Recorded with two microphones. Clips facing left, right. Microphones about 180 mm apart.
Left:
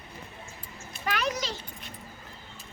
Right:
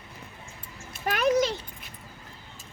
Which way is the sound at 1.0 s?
50° right (ahead or behind).